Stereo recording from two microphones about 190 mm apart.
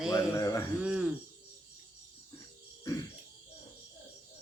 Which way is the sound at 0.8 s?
5° right (ahead or behind).